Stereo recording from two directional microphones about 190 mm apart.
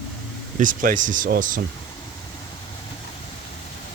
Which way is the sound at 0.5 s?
45° right (ahead or behind).